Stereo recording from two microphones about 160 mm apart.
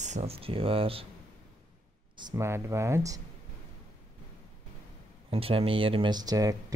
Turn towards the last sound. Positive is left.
turn(degrees=-20)  # may be behind; listen again after turning